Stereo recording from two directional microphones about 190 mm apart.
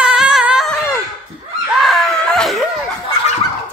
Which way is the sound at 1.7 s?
Centre (ahead or behind).